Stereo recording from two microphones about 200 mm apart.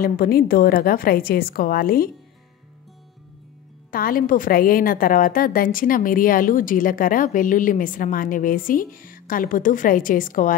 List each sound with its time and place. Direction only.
0.0 s a woman's voice: 45° left (ahead or behind)
3.9 s a woman's voice: 45° left (ahead or behind)